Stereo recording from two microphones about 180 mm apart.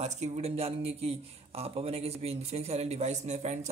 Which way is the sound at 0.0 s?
40° right (ahead or behind).